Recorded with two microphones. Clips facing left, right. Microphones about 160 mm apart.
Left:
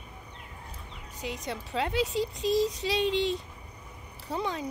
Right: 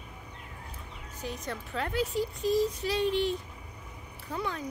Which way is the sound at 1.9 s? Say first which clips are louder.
Right 1 dB; 75° left (ahead or behind).